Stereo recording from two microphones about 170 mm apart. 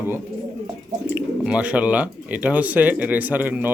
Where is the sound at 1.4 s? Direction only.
5° right (ahead or behind).